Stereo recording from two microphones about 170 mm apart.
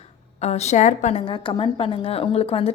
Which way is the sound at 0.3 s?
40° left (ahead or behind).